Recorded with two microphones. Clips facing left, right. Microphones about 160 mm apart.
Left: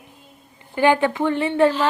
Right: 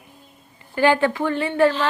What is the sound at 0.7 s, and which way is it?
Speech, 15° left (ahead or behind).